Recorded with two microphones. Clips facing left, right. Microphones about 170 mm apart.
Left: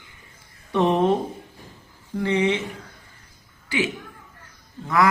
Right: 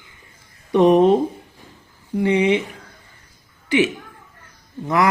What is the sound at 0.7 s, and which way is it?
Speech, 15° right (ahead or behind).